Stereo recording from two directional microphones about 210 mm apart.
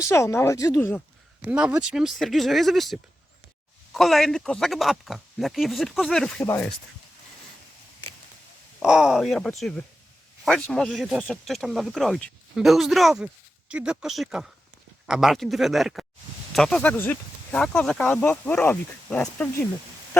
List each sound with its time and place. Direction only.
0.1 s speech: 15° left (ahead or behind)
1.4 s speech: 5° right (ahead or behind)
8.8 s speech: 5° right (ahead or behind)